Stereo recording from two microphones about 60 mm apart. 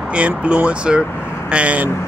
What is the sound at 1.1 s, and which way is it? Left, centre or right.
Vehicle, left.